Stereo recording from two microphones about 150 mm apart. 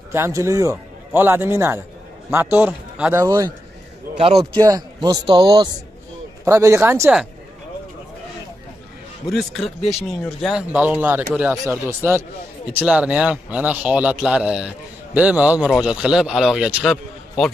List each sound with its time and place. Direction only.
0.1 s speech: 20° right (ahead or behind)
4.6 s speech: 25° right (ahead or behind)
6.4 s speech: 20° right (ahead or behind)
9.3 s a man's voice: centre (ahead or behind)